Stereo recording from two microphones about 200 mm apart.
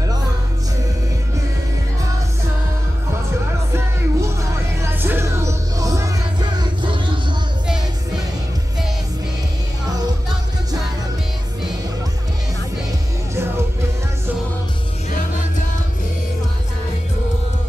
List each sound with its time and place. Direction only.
3.7 s music: 15° right (ahead or behind)
13.3 s music: 15° right (ahead or behind)